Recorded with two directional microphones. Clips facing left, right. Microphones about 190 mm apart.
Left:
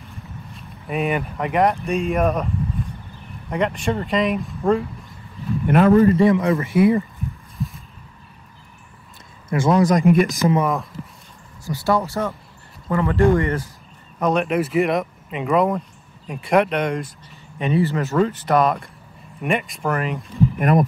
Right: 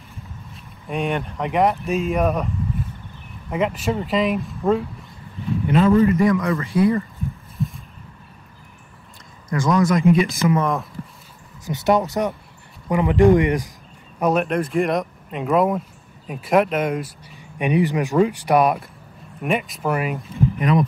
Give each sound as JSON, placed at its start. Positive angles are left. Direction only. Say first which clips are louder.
{"t": 0.1, "sound": "speech", "louder": "left 1 dB", "side_deg": 0}
{"t": 5.7, "sound": "a man's voice", "louder": "left 2 dB", "side_deg": 55}
{"t": 6.0, "sound": "speech", "louder": "left 2 dB", "side_deg": 30}
{"t": 9.5, "sound": "speech", "louder": "left 2 dB", "side_deg": 30}
{"t": 10.0, "sound": "speech", "louder": "left 1 dB", "side_deg": 55}
{"t": 10.6, "sound": "speech", "louder": "left 1 dB", "side_deg": 0}
{"t": 11.6, "sound": "speech", "louder": "right 2 dB", "side_deg": -20}
{"t": 14.2, "sound": "speech", "louder": "even", "side_deg": 0}
{"t": 20.5, "sound": "speech", "louder": "left 1 dB", "side_deg": 50}